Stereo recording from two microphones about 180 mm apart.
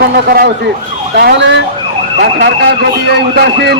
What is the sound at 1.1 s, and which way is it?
Speech, 75° right (ahead or behind).